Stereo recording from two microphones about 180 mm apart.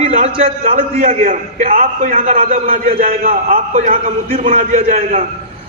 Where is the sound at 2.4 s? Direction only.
55° right (ahead or behind).